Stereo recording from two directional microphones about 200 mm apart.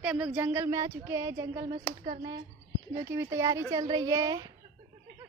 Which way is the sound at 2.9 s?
15° right (ahead or behind).